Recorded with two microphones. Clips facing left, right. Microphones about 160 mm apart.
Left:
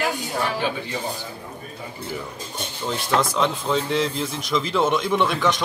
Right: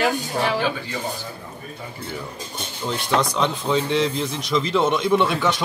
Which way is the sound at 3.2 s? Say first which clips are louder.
Even; centre (ahead or behind).